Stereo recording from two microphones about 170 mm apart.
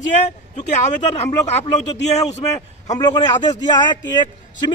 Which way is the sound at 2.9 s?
25° left (ahead or behind).